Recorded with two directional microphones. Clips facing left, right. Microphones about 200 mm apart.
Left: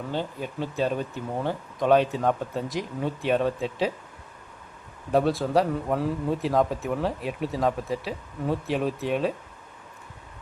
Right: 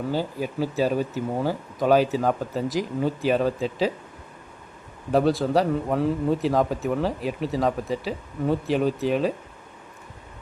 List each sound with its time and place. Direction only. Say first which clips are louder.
0.1 s a man's voice: right 4 dB; 5° right (ahead or behind)
5.1 s a man's voice: right 2 dB; centre (ahead or behind)